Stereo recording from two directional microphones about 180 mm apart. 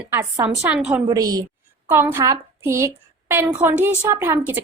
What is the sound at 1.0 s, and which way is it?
A woman's voice, 20° right (ahead or behind).